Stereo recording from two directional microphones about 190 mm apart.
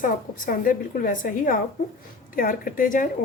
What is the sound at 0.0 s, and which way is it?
A woman's voice, 45° left (ahead or behind).